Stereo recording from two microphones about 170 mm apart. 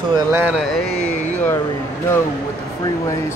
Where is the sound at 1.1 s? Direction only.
45° left (ahead or behind).